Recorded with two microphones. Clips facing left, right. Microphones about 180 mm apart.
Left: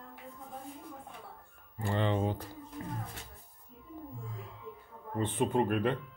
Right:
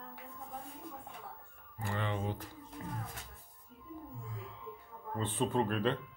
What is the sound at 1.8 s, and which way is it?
Speech, 30° left (ahead or behind).